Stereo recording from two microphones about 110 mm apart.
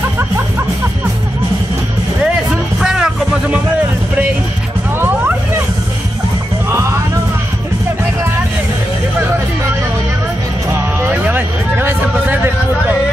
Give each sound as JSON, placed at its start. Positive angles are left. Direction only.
{"t": 2.2, "sound": "music", "side_deg": -5}
{"t": 10.7, "sound": "vehicle", "side_deg": -25}
{"t": 11.2, "sound": "a sound", "side_deg": -20}